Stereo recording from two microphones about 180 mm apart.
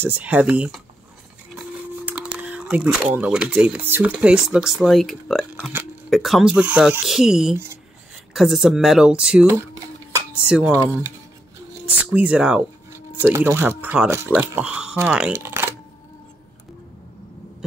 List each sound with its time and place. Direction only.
0.0 s speech: 10° right (ahead or behind)
2.0 s speech: 10° right (ahead or behind)
5.6 s speech: 10° right (ahead or behind)
6.0 s speech: centre (ahead or behind)
7.5 s speech: 15° right (ahead or behind)
8.3 s speech: centre (ahead or behind)
10.7 s speech: 15° right (ahead or behind)